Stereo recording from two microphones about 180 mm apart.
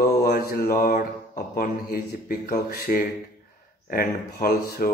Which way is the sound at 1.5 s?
55° left (ahead or behind).